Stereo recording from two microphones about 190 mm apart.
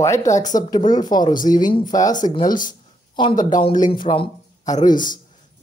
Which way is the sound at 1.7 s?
20° left (ahead or behind).